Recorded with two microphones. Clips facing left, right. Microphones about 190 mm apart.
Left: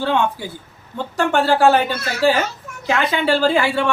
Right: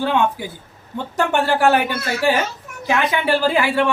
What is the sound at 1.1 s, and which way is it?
Speech, 20° right (ahead or behind).